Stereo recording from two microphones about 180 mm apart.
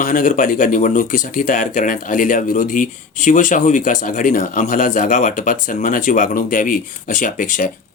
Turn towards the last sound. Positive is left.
turn(degrees=45)  # may be behind; listen again after turning